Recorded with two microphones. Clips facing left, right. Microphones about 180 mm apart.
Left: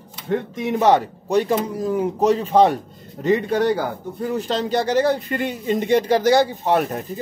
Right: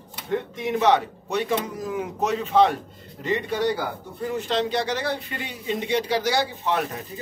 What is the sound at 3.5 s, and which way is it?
A man's voice, 50° left (ahead or behind).